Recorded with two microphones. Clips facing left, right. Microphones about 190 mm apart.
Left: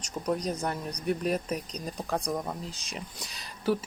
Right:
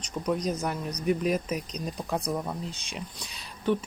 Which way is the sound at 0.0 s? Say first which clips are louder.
Right 2 dB; centre (ahead or behind).